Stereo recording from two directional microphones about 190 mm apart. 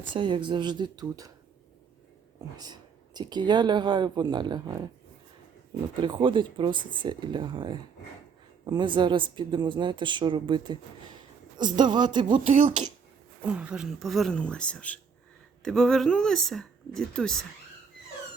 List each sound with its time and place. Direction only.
0.1 s speech: 25° right (ahead or behind)
3.2 s speech: 20° right (ahead or behind)
6.0 s speech: 25° right (ahead or behind)
12.5 s speech: 45° right (ahead or behind)
13.4 s speech: 5° right (ahead or behind)